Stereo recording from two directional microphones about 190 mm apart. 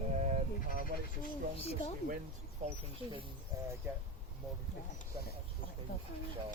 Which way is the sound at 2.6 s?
30° right (ahead or behind).